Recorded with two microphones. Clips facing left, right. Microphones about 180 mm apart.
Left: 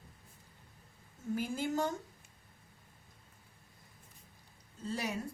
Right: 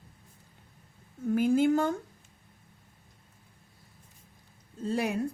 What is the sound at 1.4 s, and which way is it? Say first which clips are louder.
Speech: right 11 dB; 60° right (ahead or behind).